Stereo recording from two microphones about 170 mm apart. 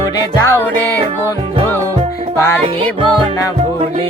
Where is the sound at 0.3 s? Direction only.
20° left (ahead or behind).